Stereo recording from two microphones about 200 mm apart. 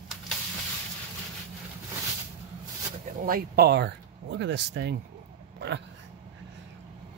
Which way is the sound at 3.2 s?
50° right (ahead or behind).